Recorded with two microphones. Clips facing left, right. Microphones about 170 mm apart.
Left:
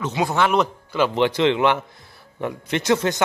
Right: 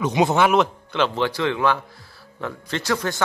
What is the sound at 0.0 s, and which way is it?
Speech, 20° right (ahead or behind).